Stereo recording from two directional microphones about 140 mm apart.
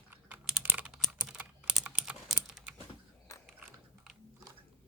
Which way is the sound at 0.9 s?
5° right (ahead or behind).